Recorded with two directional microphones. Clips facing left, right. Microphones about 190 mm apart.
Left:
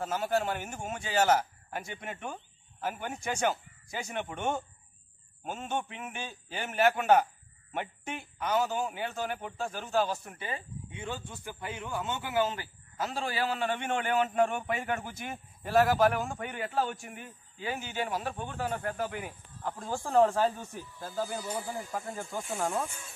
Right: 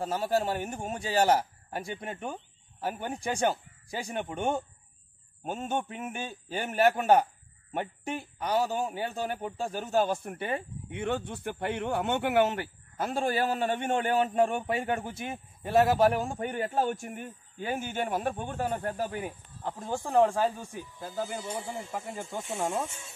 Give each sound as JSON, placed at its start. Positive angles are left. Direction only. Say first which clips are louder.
{"t": 0.0, "sound": "a man's voice", "louder": "right 2 dB", "side_deg": -30}
{"t": 10.2, "sound": "a man's voice", "louder": "right 6 dB", "side_deg": -60}
{"t": 19.7, "sound": "speech", "louder": "right 1 dB", "side_deg": -20}